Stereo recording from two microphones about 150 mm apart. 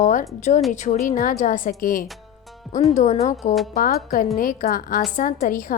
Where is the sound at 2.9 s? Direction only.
50° left (ahead or behind).